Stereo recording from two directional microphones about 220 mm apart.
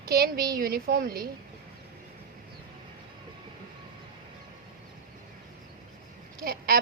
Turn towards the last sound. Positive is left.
turn(degrees=-40)  # may be behind; listen again after turning